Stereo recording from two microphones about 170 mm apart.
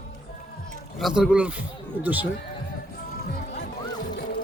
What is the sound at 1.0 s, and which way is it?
A man's voice, centre (ahead or behind).